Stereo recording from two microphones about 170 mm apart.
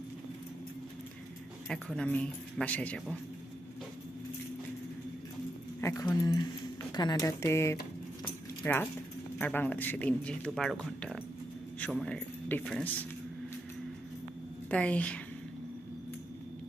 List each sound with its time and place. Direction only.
1.6 s speech: centre (ahead or behind)
5.8 s speech: 15° left (ahead or behind)
8.2 s keys jangling: 10° left (ahead or behind)
9.4 s a man's voice: 10° left (ahead or behind)
14.7 s speech: 10° left (ahead or behind)